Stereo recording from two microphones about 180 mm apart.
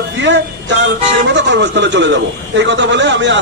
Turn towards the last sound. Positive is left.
turn(degrees=-80)